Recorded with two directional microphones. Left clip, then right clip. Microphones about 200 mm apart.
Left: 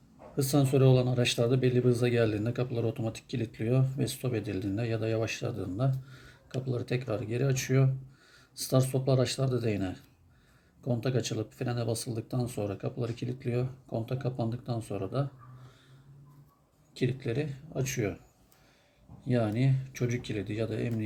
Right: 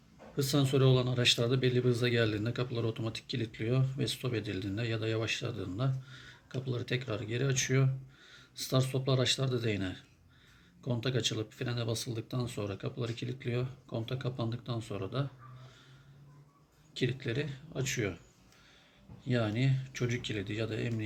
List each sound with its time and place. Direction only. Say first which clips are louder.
0.3 s speech: left 3 dB; 15° left (ahead or behind)
16.9 s speech: left 2 dB; 15° left (ahead or behind)
19.2 s speech: left 3 dB; 15° left (ahead or behind)